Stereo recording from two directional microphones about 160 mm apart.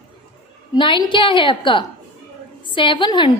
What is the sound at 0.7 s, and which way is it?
A woman's voice, 30° left (ahead or behind).